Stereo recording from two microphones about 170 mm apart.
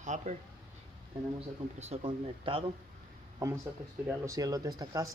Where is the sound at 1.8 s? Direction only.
35° right (ahead or behind).